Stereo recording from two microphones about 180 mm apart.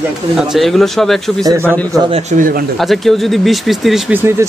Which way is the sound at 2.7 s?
Centre (ahead or behind).